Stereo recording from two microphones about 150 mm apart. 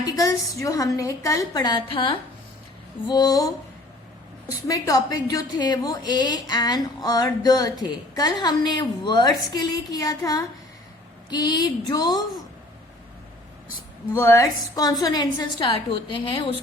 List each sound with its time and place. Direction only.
0.0 s a woman's voice: 25° left (ahead or behind)
4.7 s a woman's voice: 25° left (ahead or behind)
14.1 s a woman's voice: 20° left (ahead or behind); by 16.6 s 35° left (ahead or behind)